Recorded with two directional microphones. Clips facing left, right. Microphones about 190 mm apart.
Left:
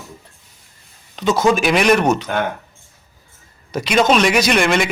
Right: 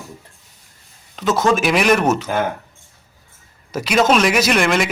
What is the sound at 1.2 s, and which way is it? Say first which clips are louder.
Speech: left 1 dB; centre (ahead or behind).